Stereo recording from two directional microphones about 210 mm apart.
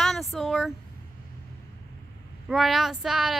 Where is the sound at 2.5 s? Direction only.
Centre (ahead or behind).